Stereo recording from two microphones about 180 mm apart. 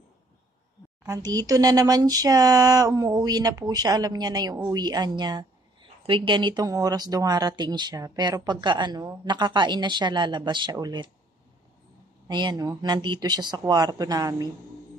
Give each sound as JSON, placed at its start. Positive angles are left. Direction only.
{"t": 1.0, "sound": "a woman's voice", "side_deg": -20}
{"t": 12.3, "sound": "a woman's voice", "side_deg": -25}